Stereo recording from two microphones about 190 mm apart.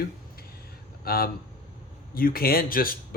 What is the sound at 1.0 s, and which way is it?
Speech, 55° left (ahead or behind).